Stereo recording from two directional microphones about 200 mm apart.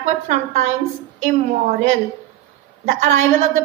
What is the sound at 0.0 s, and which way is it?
Speech, 35° right (ahead or behind).